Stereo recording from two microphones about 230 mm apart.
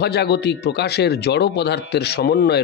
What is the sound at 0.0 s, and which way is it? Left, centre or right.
Speech, left.